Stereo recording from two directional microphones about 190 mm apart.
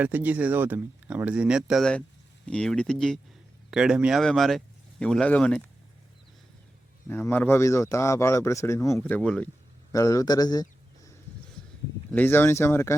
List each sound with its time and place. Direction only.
0.0 s speech: 10° right (ahead or behind)
7.1 s speech: 10° left (ahead or behind)
9.9 s a man's voice: 15° left (ahead or behind)
12.1 s speech: 10° left (ahead or behind)